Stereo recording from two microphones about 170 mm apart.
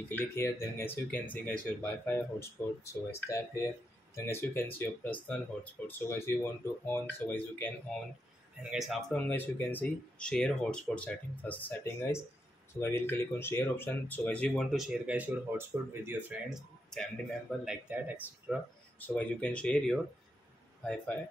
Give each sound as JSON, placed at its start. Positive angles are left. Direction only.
{"t": 0.1, "sound": "speech", "side_deg": 15}
{"t": 8.6, "sound": "speech", "side_deg": 0}
{"t": 9.3, "sound": "speech", "side_deg": 10}
{"t": 18.9, "sound": "speech", "side_deg": 10}